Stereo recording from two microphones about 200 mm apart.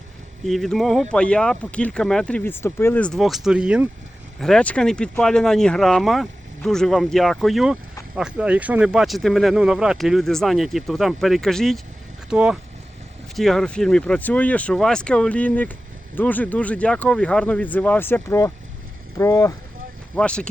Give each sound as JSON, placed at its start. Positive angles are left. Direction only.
{"t": 0.4, "sound": "speech", "side_deg": 0}
{"t": 20.1, "sound": "speech", "side_deg": 5}